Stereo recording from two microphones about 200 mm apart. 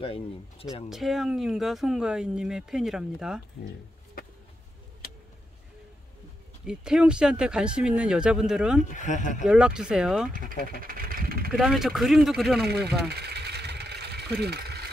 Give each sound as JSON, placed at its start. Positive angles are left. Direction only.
{"t": 0.0, "sound": "speech", "side_deg": 30}
{"t": 0.8, "sound": "speech", "side_deg": 0}
{"t": 6.6, "sound": "speech", "side_deg": -5}
{"t": 8.9, "sound": "speech", "side_deg": 40}
{"t": 9.4, "sound": "speech", "side_deg": -5}
{"t": 10.8, "sound": "speech", "side_deg": -45}
{"t": 11.5, "sound": "speech", "side_deg": 0}
{"t": 12.6, "sound": "speech", "side_deg": -55}
{"t": 13.1, "sound": "vehicle", "side_deg": -55}